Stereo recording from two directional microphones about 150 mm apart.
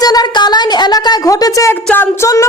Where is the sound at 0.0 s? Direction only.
25° left (ahead or behind).